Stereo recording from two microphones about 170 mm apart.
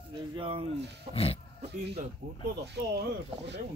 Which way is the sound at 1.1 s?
35° left (ahead or behind).